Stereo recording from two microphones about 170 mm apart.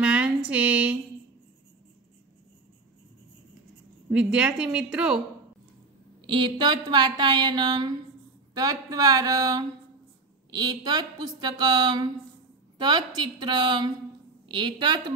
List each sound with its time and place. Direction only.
0.0 s a sound: 5° right (ahead or behind)
4.1 s speech: 5° right (ahead or behind)
6.2 s a woman's voice: 30° right (ahead or behind)